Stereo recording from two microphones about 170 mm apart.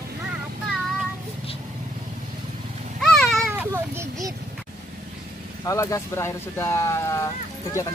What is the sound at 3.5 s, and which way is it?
Children playing, 15° right (ahead or behind).